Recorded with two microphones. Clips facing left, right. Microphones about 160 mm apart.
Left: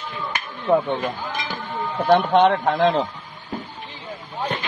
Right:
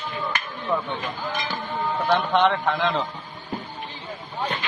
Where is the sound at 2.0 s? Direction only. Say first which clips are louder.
Left 5 dB; 40° left (ahead or behind).